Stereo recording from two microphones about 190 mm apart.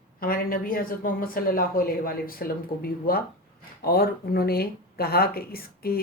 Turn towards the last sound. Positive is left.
turn(degrees=50)  # may be behind; listen again after turning